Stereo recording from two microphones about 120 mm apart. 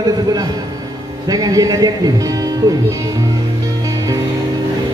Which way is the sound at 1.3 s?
30° right (ahead or behind).